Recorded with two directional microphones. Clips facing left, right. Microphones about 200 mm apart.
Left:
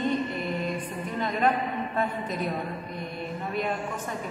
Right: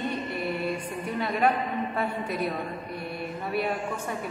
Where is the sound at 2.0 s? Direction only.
10° right (ahead or behind).